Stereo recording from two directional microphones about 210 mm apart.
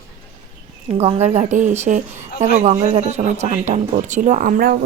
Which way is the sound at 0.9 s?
30° right (ahead or behind).